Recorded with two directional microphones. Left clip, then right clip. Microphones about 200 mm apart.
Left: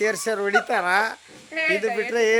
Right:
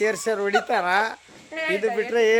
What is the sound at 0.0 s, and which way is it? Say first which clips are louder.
Speech: even; 10° left (ahead or behind).